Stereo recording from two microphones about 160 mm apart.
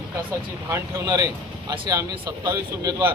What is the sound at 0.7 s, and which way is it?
Speech, 20° right (ahead or behind).